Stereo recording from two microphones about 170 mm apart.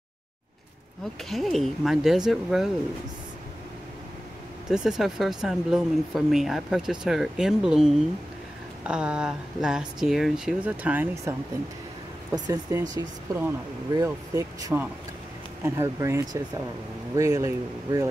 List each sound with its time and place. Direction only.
1.3 s speech: centre (ahead or behind)
4.6 s speech: centre (ahead or behind); by 18.0 s 20° right (ahead or behind)